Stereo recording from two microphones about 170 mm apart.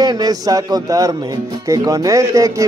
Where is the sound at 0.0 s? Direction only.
20° right (ahead or behind).